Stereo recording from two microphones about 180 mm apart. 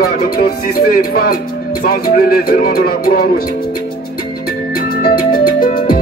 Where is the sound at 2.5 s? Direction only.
55° left (ahead or behind).